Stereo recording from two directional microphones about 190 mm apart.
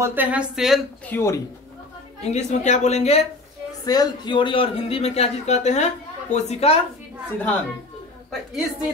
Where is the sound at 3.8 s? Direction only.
20° left (ahead or behind).